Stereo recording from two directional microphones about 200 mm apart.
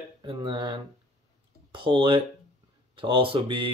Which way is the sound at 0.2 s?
25° right (ahead or behind).